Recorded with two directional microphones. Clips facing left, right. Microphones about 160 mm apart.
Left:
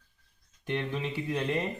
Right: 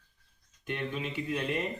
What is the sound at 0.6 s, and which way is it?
Speech, 30° left (ahead or behind).